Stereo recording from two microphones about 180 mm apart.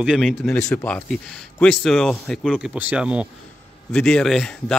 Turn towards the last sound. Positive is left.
turn(degrees=5)  # may be behind; listen again after turning